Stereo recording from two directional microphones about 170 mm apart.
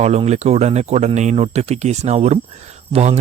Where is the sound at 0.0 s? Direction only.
40° right (ahead or behind).